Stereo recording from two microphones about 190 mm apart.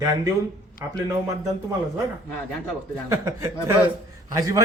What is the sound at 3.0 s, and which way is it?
Speech, 15° right (ahead or behind).